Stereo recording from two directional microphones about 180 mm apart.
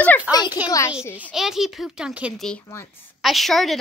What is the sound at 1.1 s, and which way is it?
Speech, 5° right (ahead or behind).